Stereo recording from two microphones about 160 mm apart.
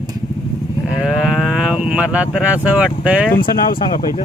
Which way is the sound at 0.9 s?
5° right (ahead or behind).